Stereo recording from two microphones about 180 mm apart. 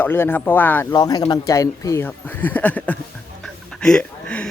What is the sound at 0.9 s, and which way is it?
Speech, 20° left (ahead or behind).